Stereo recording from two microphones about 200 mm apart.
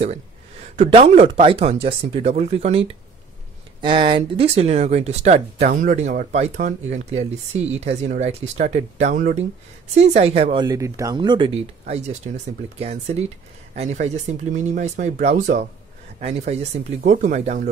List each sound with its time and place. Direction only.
0.0 s speech: 30° right (ahead or behind)
3.8 s speech: 25° right (ahead or behind)